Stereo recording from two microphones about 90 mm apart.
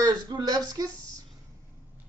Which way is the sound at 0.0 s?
50° right (ahead or behind).